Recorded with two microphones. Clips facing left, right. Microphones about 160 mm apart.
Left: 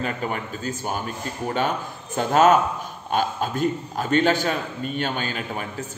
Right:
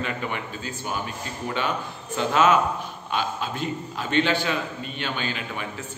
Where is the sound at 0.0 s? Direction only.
40° left (ahead or behind).